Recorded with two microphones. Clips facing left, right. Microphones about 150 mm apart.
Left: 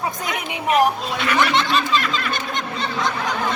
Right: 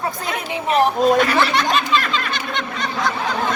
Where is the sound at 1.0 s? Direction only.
45° right (ahead or behind).